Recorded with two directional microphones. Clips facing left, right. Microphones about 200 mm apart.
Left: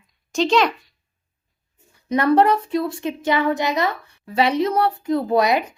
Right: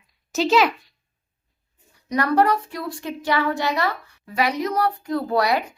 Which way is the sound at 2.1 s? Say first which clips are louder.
Left 3 dB; 25° left (ahead or behind).